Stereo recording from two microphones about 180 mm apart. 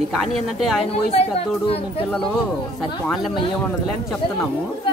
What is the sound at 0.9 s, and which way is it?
Speech, 35° left (ahead or behind).